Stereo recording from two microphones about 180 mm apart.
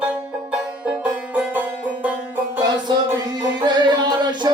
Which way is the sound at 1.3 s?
10° right (ahead or behind).